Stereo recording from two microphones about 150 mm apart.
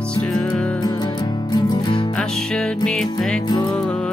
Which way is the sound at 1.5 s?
30° left (ahead or behind).